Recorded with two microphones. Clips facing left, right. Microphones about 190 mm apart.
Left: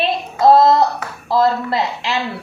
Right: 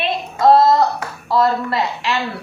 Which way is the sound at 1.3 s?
30° left (ahead or behind).